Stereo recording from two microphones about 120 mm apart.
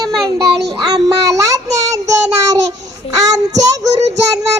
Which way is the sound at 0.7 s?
35° right (ahead or behind).